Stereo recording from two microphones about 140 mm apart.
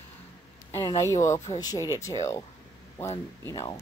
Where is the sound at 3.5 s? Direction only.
25° left (ahead or behind).